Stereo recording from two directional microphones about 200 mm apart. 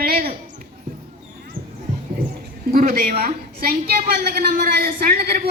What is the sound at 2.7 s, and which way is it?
A woman's voice, 45° right (ahead or behind).